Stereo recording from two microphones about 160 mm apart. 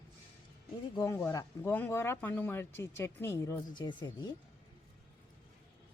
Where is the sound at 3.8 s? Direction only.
25° left (ahead or behind).